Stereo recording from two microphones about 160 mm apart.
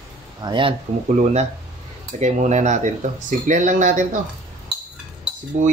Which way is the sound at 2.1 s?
45° right (ahead or behind).